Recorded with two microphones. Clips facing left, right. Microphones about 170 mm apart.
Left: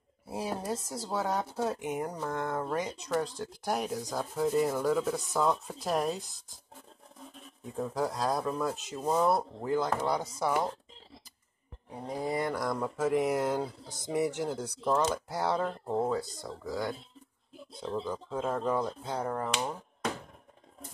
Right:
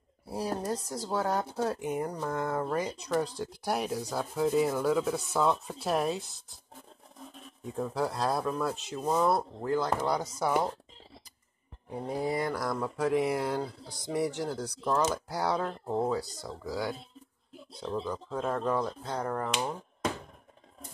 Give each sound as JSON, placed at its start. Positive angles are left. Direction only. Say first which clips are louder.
{"t": 0.3, "sound": "sanding", "louder": "right 2 dB", "side_deg": 0}
{"t": 7.7, "sound": "sanding", "louder": "right 1 dB", "side_deg": 0}
{"t": 12.2, "sound": "sanding", "louder": "even", "side_deg": 0}
{"t": 14.1, "sound": "speech", "louder": "left 1 dB", "side_deg": 10}
{"t": 15.0, "sound": "sanding", "louder": "even", "side_deg": 0}
{"t": 17.8, "sound": "speech", "louder": "right 1 dB", "side_deg": 5}